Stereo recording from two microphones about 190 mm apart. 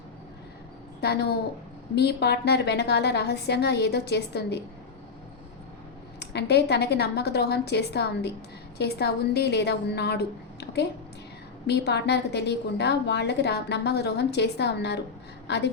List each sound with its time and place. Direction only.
1.0 s a woman's voice: 60° left (ahead or behind)
6.1 s a woman's voice: 60° left (ahead or behind)